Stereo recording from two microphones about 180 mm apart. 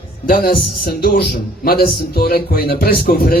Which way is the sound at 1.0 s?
55° left (ahead or behind).